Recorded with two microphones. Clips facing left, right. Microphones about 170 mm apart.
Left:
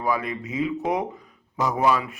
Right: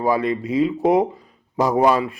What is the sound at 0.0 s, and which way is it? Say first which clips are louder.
A man's voice: right 6 dB; 30° right (ahead or behind).